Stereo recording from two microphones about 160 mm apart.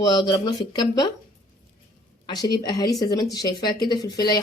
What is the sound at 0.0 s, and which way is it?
Speech, 25° left (ahead or behind).